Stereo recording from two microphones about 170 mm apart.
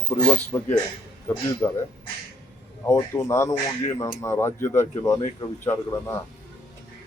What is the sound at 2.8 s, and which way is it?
Speech, 20° left (ahead or behind).